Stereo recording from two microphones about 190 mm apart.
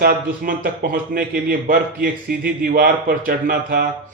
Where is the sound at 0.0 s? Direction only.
50° right (ahead or behind).